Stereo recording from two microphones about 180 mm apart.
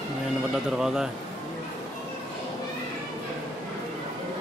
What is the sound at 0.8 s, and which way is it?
Speech, centre (ahead or behind).